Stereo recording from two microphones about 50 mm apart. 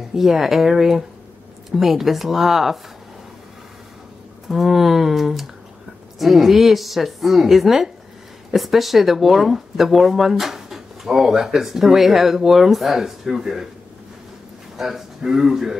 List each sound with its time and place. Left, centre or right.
0.1 s speech: centre
4.5 s speech: centre
14.8 s speech: centre